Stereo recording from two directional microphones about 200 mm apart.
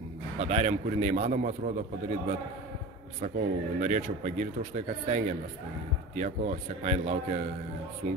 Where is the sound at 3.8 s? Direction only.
40° right (ahead or behind).